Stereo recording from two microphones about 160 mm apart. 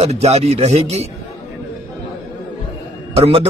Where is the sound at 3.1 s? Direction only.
40° right (ahead or behind).